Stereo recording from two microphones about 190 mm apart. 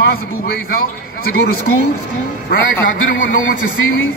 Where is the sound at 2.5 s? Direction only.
45° left (ahead or behind).